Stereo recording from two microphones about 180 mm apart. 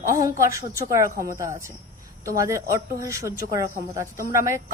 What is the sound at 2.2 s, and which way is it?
A woman's voice, 15° right (ahead or behind).